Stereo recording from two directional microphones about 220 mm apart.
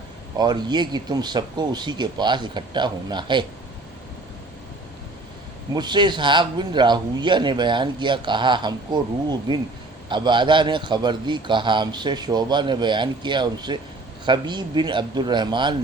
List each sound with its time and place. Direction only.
0.3 s a man's voice: 20° right (ahead or behind)
5.7 s a man's voice: 20° right (ahead or behind)